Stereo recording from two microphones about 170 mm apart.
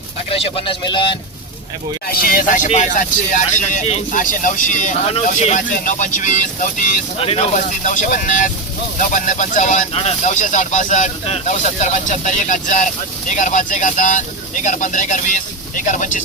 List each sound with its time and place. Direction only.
0.3 s a man's voice: 35° left (ahead or behind)
2.0 s speech: 60° left (ahead or behind)
7.2 s speech: 35° left (ahead or behind)